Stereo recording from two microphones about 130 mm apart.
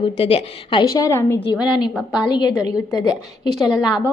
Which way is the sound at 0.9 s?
25° left (ahead or behind).